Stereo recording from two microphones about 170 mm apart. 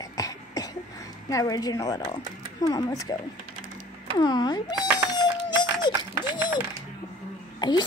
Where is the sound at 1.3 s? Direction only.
20° left (ahead or behind).